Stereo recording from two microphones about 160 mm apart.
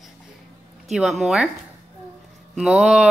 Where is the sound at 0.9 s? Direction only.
Centre (ahead or behind).